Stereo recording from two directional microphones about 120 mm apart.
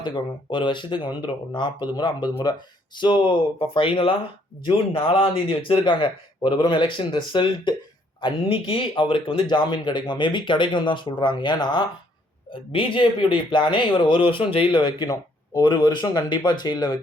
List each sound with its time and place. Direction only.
0.0 s a man's voice: 40° left (ahead or behind)